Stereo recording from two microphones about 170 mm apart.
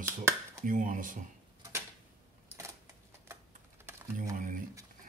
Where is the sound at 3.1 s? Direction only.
15° right (ahead or behind).